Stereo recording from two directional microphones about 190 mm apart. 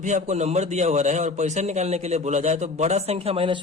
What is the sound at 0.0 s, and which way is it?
A man's voice, 40° right (ahead or behind).